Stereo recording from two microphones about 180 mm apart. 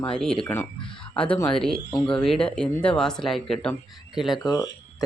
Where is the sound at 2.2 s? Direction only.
5° left (ahead or behind).